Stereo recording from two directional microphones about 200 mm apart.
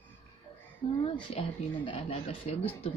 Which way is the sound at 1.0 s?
30° left (ahead or behind).